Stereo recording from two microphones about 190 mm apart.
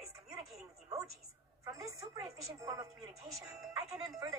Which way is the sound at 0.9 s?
15° right (ahead or behind).